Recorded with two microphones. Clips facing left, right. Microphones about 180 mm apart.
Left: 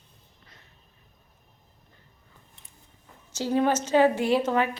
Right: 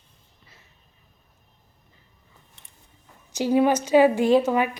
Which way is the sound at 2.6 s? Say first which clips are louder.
Right 1 dB; 75° right (ahead or behind).